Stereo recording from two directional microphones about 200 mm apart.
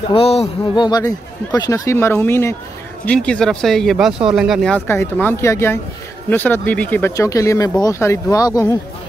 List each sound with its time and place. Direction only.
0.1 s a man's voice: 30° left (ahead or behind)
0.7 s speech: 20° left (ahead or behind)